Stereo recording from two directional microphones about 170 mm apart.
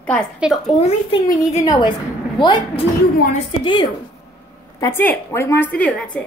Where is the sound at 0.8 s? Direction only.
30° left (ahead or behind).